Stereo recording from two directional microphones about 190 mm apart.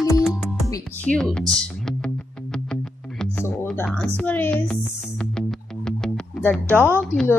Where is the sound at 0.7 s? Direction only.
5° left (ahead or behind).